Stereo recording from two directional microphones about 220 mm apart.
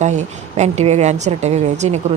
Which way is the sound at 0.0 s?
30° right (ahead or behind).